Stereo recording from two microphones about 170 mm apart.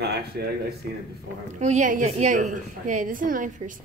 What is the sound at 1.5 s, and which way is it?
A woman's voice, 45° right (ahead or behind).